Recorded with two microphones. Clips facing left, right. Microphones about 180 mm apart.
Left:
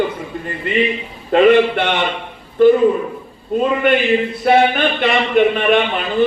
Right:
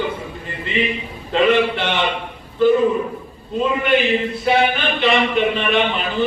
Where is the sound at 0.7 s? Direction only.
55° left (ahead or behind).